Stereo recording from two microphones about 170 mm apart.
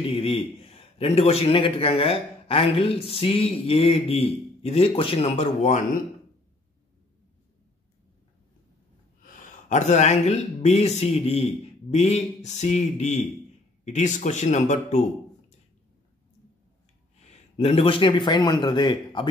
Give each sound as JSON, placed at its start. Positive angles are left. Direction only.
{"t": 0.0, "sound": "a man's voice", "side_deg": 30}
{"t": 9.2, "sound": "a man's voice", "side_deg": 50}
{"t": 17.6, "sound": "speech", "side_deg": 35}